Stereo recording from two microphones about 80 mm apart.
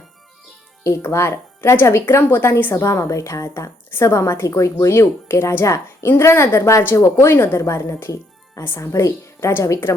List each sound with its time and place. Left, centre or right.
0.9 s a woman's voice: left